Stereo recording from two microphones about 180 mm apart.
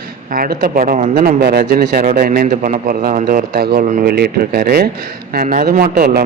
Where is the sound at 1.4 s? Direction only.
60° right (ahead or behind).